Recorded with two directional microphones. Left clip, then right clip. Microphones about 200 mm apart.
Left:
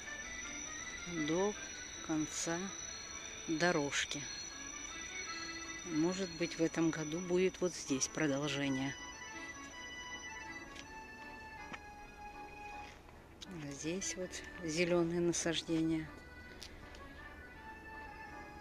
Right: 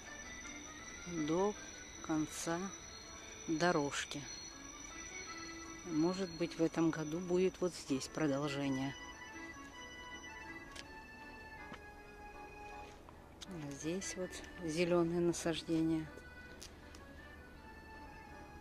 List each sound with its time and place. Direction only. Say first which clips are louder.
1.1 s speech: even; centre (ahead or behind)
6.1 s speech: left 1 dB; 5° right (ahead or behind)
9.0 s music: left 2 dB; 35° left (ahead or behind)
13.6 s speech: left 1 dB; 5° right (ahead or behind)